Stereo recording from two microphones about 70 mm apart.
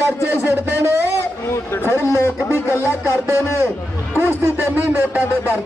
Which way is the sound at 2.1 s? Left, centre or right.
Left.